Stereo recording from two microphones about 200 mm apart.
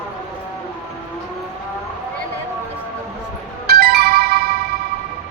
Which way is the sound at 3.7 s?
50° right (ahead or behind).